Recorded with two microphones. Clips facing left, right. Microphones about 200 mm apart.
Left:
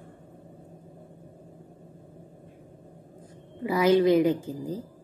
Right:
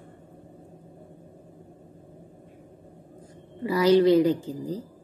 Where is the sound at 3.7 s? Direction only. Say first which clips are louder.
Right 2 dB; 20° left (ahead or behind).